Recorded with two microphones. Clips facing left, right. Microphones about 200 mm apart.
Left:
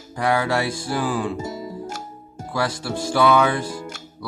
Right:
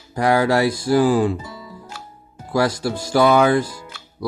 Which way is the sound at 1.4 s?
45° left (ahead or behind).